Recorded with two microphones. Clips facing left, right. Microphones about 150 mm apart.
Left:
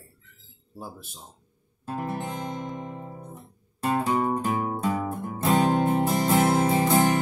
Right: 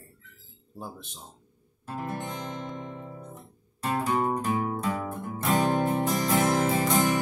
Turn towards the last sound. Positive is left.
turn(degrees=25)  # may be behind; listen again after turning